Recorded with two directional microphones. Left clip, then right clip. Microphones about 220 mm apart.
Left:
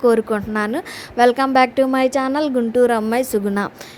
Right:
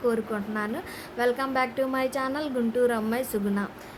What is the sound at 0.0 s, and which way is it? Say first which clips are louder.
A woman's voice: left 11 dB; 40° left (ahead or behind).